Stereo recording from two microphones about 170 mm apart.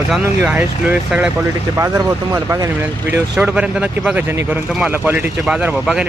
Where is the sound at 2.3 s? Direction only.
20° right (ahead or behind).